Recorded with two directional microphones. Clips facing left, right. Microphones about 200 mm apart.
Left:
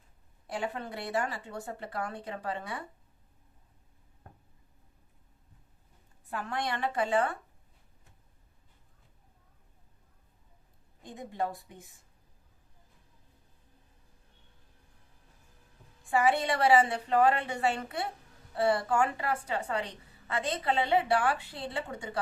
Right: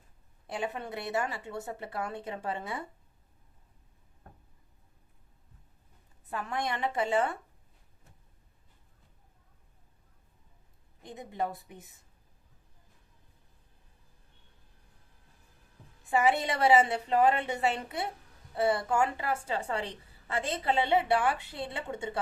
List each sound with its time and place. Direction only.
0.4 s a woman's voice: 25° right (ahead or behind)
6.3 s a woman's voice: 20° right (ahead or behind)
11.0 s a woman's voice: 20° right (ahead or behind)
16.0 s a woman's voice: 20° right (ahead or behind)